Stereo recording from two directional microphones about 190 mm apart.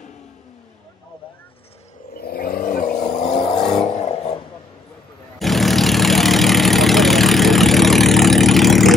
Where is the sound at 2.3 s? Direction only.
50° left (ahead or behind).